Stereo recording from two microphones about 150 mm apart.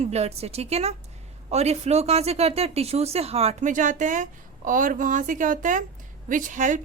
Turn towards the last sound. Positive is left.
turn(degrees=-55)  # may be behind; listen again after turning